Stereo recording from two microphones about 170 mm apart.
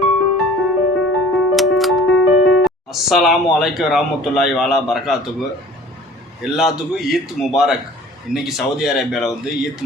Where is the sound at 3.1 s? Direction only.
Centre (ahead or behind).